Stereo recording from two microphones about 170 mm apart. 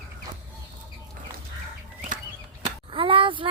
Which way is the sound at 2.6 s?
30° right (ahead or behind).